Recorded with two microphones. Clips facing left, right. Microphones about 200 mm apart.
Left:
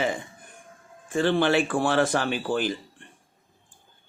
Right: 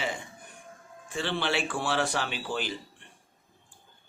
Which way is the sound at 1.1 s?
50° left (ahead or behind).